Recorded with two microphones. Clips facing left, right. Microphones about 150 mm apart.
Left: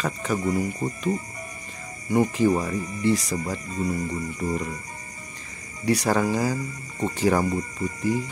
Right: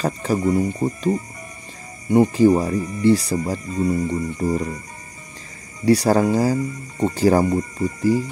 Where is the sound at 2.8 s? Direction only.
Centre (ahead or behind).